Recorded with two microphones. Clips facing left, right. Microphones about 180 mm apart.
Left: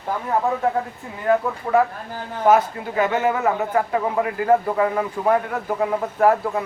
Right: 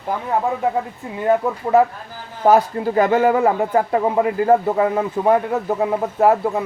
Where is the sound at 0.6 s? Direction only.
20° right (ahead or behind).